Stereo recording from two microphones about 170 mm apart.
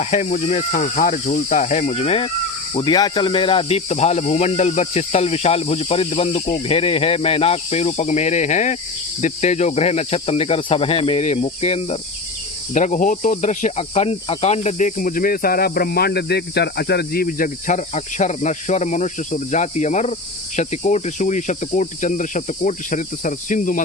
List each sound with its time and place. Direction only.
0.0 s cricket: 40° left (ahead or behind)
2.7 s speech: 25° left (ahead or behind)
12.7 s cricket: 45° left (ahead or behind)